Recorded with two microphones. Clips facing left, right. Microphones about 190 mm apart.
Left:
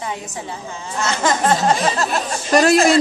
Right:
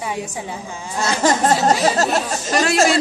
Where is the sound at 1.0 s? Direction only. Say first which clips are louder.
Right 2 dB; 35° right (ahead or behind).